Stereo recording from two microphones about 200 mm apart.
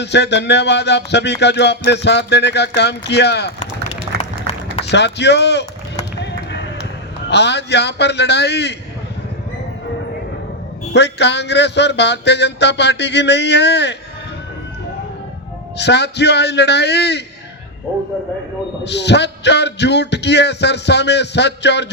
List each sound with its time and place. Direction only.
0.0 s music: 60° left (ahead or behind)
4.9 s music: 60° left (ahead or behind)
6.1 s run: 60° left (ahead or behind)
7.3 s music: 60° left (ahead or behind)
10.9 s music: 60° left (ahead or behind)
15.8 s music: 55° left (ahead or behind)
18.9 s music: 60° left (ahead or behind)